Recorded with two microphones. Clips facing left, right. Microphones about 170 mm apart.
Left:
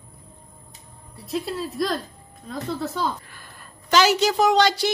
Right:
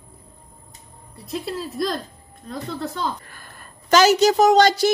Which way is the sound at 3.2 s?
45° right (ahead or behind).